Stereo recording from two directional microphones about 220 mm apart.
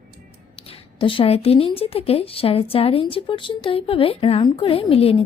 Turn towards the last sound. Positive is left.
turn(degrees=25)  # may be behind; listen again after turning